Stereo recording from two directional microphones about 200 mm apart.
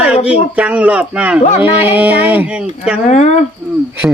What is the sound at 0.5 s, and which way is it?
A man's voice, 5° right (ahead or behind).